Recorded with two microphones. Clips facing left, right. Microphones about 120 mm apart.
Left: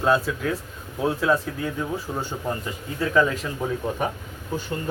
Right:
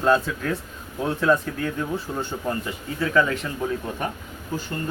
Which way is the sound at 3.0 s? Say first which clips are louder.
Left 1 dB; 15° left (ahead or behind).